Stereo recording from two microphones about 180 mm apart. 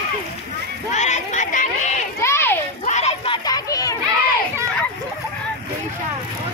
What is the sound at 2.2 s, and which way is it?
Children playing, 15° left (ahead or behind).